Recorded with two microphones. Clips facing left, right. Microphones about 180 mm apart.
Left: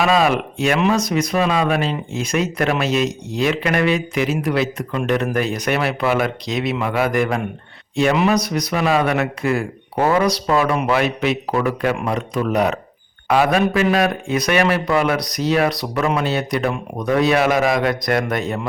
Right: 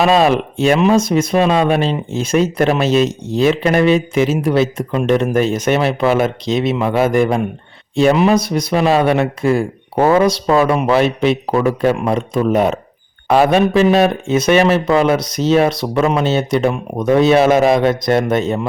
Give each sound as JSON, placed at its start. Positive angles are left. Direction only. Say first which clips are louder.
{"t": 0.0, "sound": "speech", "louder": "right 4 dB", "side_deg": -30}